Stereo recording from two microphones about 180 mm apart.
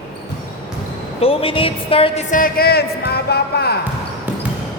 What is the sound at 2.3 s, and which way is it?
Speech, 55° left (ahead or behind).